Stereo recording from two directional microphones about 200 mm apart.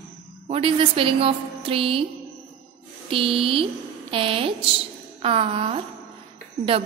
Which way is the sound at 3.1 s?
25° right (ahead or behind).